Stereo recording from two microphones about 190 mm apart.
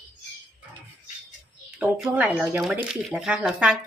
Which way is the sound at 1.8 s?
5° right (ahead or behind).